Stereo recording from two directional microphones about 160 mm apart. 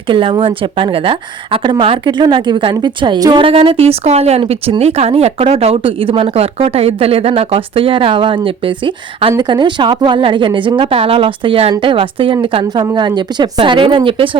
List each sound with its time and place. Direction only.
0.1 s a woman's voice: 30° right (ahead or behind)